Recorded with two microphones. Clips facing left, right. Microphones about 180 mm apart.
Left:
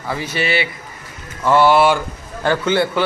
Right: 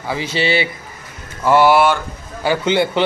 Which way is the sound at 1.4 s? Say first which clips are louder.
Right 1 dB; 10° right (ahead or behind).